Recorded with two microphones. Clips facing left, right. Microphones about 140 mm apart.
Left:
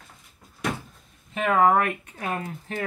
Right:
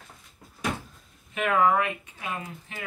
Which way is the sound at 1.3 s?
40° left (ahead or behind).